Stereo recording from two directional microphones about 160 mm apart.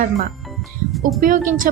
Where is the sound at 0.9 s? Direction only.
Centre (ahead or behind).